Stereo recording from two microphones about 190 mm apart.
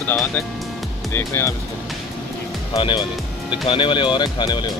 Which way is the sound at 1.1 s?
15° left (ahead or behind).